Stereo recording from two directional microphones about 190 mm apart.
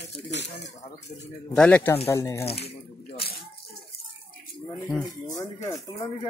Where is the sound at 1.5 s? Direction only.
5° left (ahead or behind).